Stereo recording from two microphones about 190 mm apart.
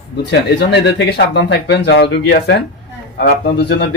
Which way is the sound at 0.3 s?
65° left (ahead or behind).